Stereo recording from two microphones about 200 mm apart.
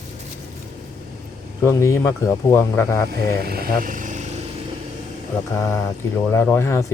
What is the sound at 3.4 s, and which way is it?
Speech, 50° right (ahead or behind).